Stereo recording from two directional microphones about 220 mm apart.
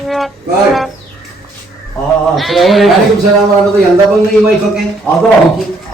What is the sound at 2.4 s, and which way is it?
Speech, centre (ahead or behind).